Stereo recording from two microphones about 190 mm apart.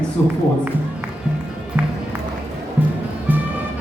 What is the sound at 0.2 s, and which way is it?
Speech, 10° left (ahead or behind).